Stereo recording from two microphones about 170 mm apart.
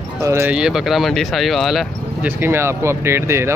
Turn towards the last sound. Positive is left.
turn(degrees=-15)  # may be behind; listen again after turning